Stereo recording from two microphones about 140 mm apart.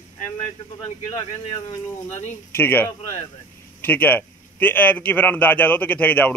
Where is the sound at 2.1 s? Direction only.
55° left (ahead or behind).